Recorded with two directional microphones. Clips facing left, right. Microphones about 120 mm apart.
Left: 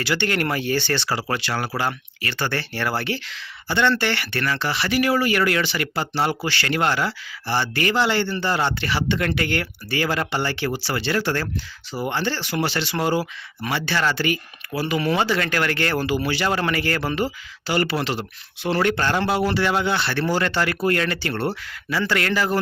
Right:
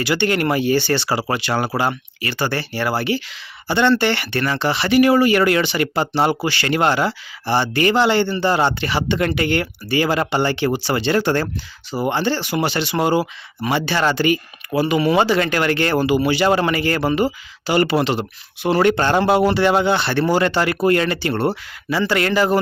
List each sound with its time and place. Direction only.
0.0 s speech: 15° right (ahead or behind)